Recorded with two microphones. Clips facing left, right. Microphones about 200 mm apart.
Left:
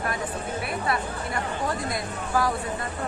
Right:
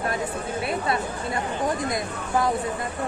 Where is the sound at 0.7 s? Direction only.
25° right (ahead or behind).